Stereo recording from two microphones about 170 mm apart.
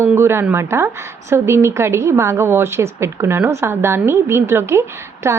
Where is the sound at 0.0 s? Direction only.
15° right (ahead or behind).